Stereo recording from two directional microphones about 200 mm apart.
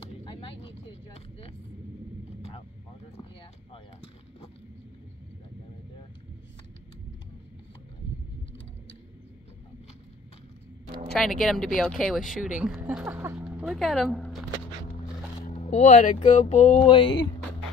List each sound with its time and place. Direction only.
0.2 s vehicle: 25° left (ahead or behind)
3.7 s a sound: 25° left (ahead or behind)
11.1 s speech: centre (ahead or behind)
15.5 s speech: 35° left (ahead or behind)